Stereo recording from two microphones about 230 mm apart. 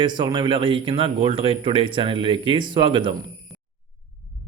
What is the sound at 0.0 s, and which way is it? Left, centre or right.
A man's voice, centre.